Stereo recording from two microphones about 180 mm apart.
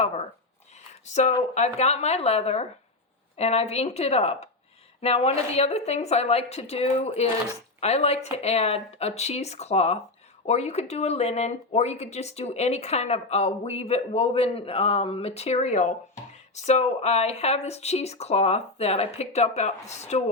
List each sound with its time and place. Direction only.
1.0 s speech: 40° left (ahead or behind)